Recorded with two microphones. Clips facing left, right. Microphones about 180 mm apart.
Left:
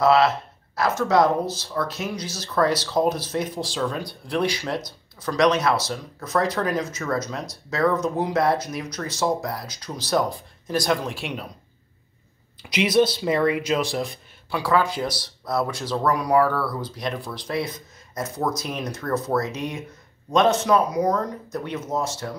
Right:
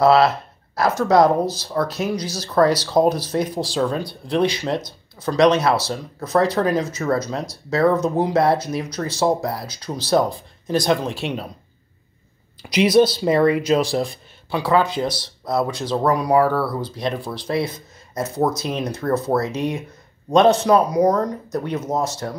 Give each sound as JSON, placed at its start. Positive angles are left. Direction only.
{"t": 0.0, "sound": "speech", "side_deg": -35}
{"t": 12.6, "sound": "speech", "side_deg": -35}